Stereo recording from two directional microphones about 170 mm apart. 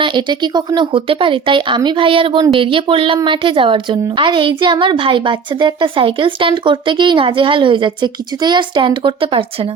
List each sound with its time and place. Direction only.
0.0 s a woman's voice: 25° right (ahead or behind)